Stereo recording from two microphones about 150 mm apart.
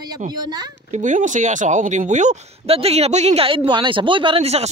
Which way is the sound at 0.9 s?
55° right (ahead or behind).